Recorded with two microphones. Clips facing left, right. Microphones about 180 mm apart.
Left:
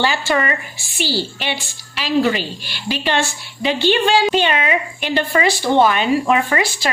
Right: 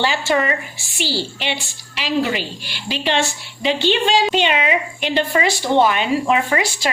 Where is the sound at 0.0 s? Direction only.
20° right (ahead or behind).